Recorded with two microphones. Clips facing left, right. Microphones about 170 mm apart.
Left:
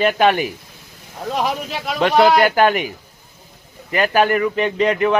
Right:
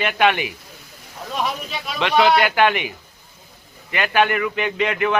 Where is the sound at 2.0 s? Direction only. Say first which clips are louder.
Left 3 dB; 40° left (ahead or behind).